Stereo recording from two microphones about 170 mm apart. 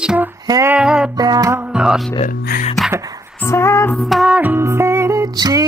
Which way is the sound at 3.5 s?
15° left (ahead or behind).